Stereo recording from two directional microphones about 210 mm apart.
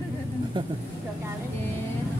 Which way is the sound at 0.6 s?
25° right (ahead or behind).